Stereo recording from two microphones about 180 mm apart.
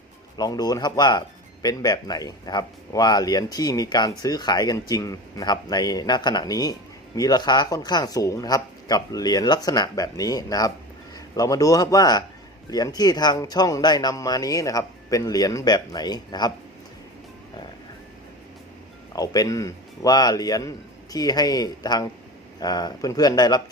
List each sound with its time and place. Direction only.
0.3 s speech: 20° left (ahead or behind)
19.1 s speech: 20° left (ahead or behind)